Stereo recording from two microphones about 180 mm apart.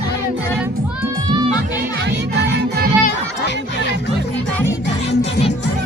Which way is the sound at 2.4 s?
65° right (ahead or behind).